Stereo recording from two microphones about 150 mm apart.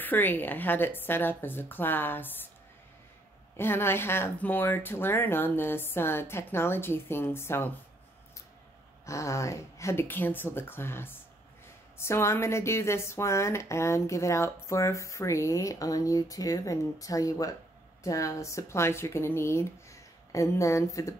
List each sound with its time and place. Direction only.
0.0 s speech: 10° left (ahead or behind)
3.5 s speech: 15° left (ahead or behind)
9.0 s a woman's voice: 20° left (ahead or behind)